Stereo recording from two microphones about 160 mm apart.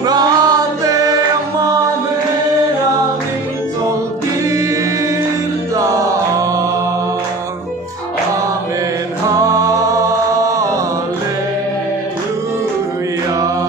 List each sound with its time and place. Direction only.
0.0 s music: 25° right (ahead or behind)
6.3 s mantra: 20° right (ahead or behind)
9.3 s music: 20° right (ahead or behind)